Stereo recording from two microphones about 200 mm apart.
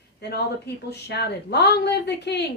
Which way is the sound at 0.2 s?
55° left (ahead or behind).